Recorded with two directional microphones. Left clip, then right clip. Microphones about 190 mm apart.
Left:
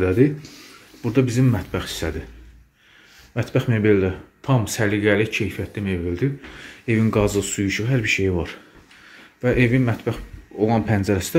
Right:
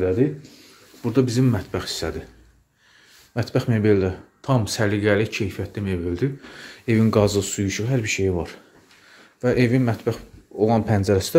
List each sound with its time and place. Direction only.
0.2 s speech: 15° left (ahead or behind)
1.0 s speech: 15° right (ahead or behind)
3.3 s speech: 10° right (ahead or behind)